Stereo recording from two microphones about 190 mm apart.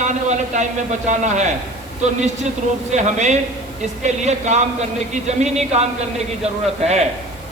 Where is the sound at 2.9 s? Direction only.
40° right (ahead or behind).